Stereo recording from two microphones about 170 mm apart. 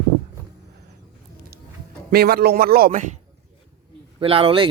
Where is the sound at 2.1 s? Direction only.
65° right (ahead or behind).